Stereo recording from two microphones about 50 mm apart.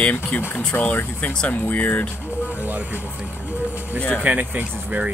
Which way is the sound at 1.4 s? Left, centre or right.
Left.